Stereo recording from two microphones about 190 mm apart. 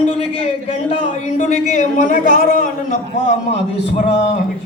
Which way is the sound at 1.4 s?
40° left (ahead or behind).